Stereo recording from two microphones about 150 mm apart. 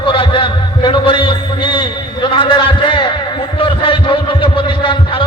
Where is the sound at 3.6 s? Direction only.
35° left (ahead or behind).